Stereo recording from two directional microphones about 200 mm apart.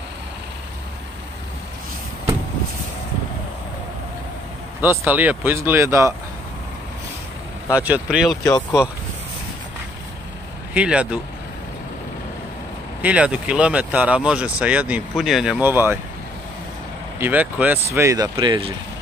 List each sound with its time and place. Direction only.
4.8 s speech: 10° right (ahead or behind)
7.7 s speech: 5° right (ahead or behind)
10.7 s speech: 5° right (ahead or behind)
13.0 s speech: 5° right (ahead or behind)
17.2 s speech: 10° right (ahead or behind); by 18.7 s 25° right (ahead or behind)